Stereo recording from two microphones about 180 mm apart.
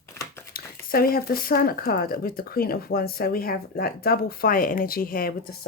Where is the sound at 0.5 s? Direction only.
55° left (ahead or behind).